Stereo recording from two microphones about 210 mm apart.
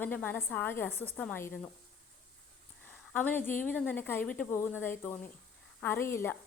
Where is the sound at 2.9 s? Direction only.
10° left (ahead or behind).